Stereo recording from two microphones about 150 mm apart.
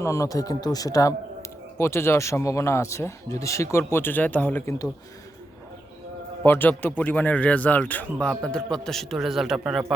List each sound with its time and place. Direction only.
0.0 s speech: 20° left (ahead or behind)
6.4 s a man's voice: 15° left (ahead or behind); by 9.8 s centre (ahead or behind)